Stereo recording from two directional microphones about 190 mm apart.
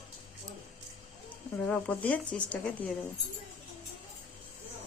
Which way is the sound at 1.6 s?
5° left (ahead or behind).